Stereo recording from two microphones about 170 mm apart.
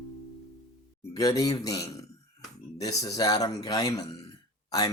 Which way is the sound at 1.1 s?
20° left (ahead or behind).